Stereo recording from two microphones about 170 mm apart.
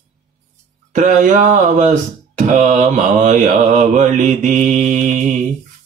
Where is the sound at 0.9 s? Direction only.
45° right (ahead or behind).